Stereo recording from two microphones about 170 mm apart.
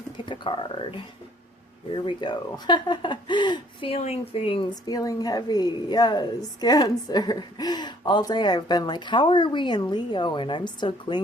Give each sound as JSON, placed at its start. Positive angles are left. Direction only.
{"t": 0.3, "sound": "speech", "side_deg": 30}
{"t": 2.0, "sound": "speech", "side_deg": 25}